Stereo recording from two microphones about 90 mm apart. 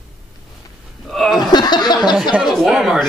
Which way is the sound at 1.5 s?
50° left (ahead or behind).